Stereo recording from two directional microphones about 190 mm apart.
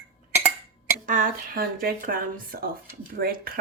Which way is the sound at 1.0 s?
45° right (ahead or behind).